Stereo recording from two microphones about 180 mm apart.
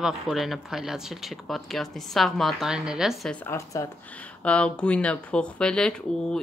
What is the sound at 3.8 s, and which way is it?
Speech, 15° left (ahead or behind).